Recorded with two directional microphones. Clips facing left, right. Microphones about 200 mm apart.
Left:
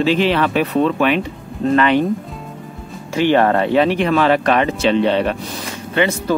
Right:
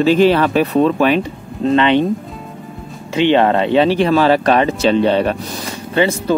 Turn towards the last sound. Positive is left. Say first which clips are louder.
# right 2 dB
turn(degrees=-30)  # may be behind; listen again after turning